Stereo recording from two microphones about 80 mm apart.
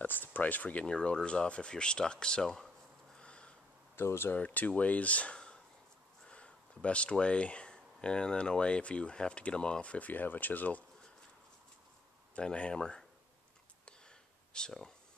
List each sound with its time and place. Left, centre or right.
0.0 s speech: left; by 2.7 s centre
3.2 s a sound: centre
3.9 s speech: left
4.4 s speech: centre
12.4 s speech: centre
13.8 s a sound: centre